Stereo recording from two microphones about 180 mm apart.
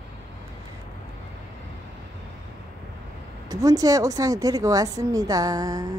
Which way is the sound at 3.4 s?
20° right (ahead or behind).